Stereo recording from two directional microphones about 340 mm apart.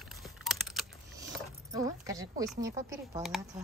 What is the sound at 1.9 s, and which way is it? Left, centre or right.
Speech, centre.